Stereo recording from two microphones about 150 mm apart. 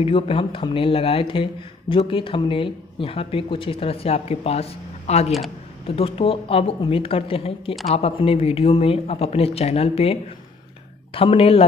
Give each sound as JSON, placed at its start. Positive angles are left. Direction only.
{"t": 0.0, "sound": "speech", "side_deg": 40}
{"t": 11.1, "sound": "speech", "side_deg": 40}